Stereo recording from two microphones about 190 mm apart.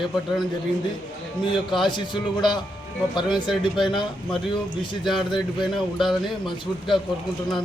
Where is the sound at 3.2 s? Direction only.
25° left (ahead or behind).